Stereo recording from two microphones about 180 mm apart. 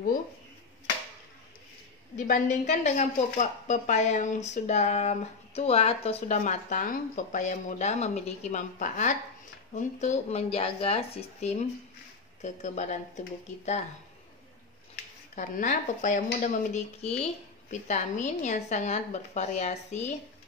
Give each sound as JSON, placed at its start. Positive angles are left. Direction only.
{"t": 2.1, "sound": "a woman's voice", "side_deg": 45}
{"t": 15.3, "sound": "a woman's voice", "side_deg": 45}